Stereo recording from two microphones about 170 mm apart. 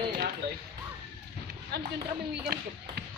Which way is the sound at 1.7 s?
75° right (ahead or behind).